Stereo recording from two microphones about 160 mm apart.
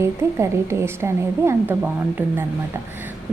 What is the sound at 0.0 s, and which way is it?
A woman's voice, 15° right (ahead or behind).